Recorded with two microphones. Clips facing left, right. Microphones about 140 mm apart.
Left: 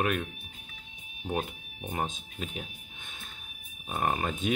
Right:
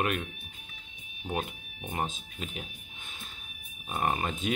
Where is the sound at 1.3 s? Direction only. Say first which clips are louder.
Left 1 dB; centre (ahead or behind).